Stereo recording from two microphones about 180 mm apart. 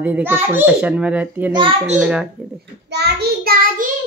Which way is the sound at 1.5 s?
30° right (ahead or behind).